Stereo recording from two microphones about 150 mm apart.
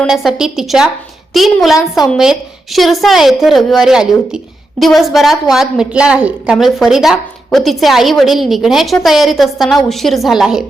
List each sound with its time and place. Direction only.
0.0 s a woman's voice: centre (ahead or behind)